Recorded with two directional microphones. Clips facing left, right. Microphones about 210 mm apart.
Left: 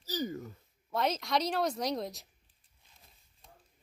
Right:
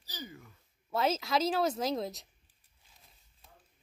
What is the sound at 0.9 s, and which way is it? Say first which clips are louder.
A woman's voice: right 1 dB; 5° right (ahead or behind).